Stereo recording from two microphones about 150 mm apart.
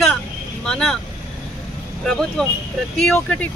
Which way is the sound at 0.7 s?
5° left (ahead or behind).